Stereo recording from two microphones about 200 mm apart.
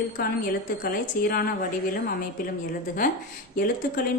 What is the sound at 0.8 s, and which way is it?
Speech, 50° left (ahead or behind).